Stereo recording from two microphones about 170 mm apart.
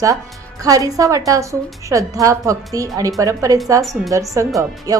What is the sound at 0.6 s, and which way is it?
A woman's voice, 20° right (ahead or behind).